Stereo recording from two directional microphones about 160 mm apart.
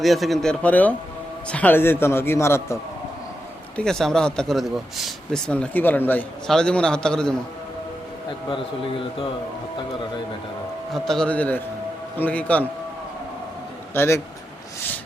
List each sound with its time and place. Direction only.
0.0 s a man's voice: centre (ahead or behind); by 2.7 s 15° left (ahead or behind)
3.8 s speech: 5° left (ahead or behind)
8.4 s a man's voice: 35° left (ahead or behind)
10.9 s a man's voice: centre (ahead or behind)
13.9 s a man's voice: 15° left (ahead or behind)